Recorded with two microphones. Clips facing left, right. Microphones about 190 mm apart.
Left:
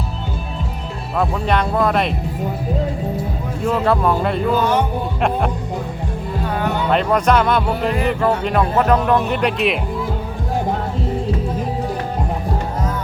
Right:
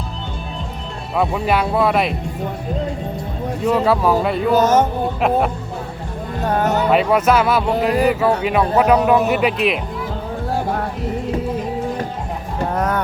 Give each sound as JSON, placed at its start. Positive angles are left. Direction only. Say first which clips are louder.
{"t": 1.1, "sound": "speech", "louder": "right 1 dB", "side_deg": 0}
{"t": 3.6, "sound": "speech", "louder": "right 1 dB", "side_deg": 0}
{"t": 4.5, "sound": "speech", "louder": "right 6 dB", "side_deg": -45}
{"t": 6.4, "sound": "music", "louder": "right 4 dB", "side_deg": -45}
{"t": 6.9, "sound": "speech", "louder": "even", "side_deg": -5}
{"t": 12.7, "sound": "music", "louder": "right 4 dB", "side_deg": -65}